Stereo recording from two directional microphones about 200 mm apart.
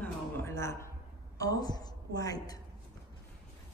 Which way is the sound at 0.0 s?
10° left (ahead or behind).